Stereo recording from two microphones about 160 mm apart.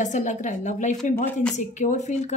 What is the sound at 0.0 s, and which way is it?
Speech, 50° left (ahead or behind).